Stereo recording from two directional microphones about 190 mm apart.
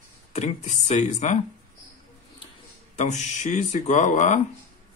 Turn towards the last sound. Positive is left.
turn(degrees=40)  # may be behind; listen again after turning